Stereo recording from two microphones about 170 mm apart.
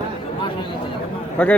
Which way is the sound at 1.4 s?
10° left (ahead or behind).